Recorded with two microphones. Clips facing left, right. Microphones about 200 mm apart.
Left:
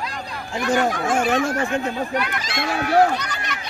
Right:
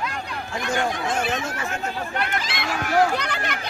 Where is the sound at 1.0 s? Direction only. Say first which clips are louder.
Left 5 dB; 50° left (ahead or behind).